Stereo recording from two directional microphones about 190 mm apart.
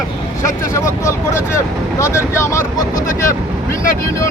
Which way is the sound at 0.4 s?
15° left (ahead or behind).